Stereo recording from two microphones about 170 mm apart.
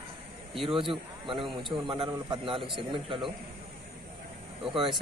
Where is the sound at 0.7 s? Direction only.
30° right (ahead or behind).